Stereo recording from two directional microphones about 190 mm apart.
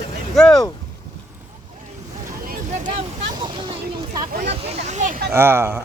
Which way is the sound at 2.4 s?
50° right (ahead or behind).